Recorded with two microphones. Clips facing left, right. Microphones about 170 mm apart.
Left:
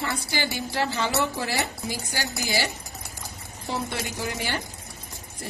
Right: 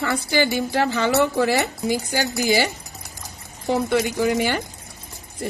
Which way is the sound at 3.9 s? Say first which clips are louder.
Right 11 dB; 70° right (ahead or behind).